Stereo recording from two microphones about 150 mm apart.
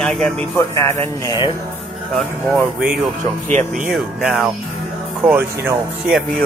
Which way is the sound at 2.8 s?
5° right (ahead or behind).